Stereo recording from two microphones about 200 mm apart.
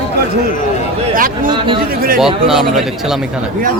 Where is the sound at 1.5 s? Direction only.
25° right (ahead or behind).